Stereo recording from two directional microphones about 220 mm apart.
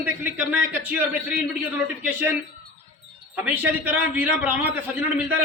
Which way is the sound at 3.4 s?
10° right (ahead or behind).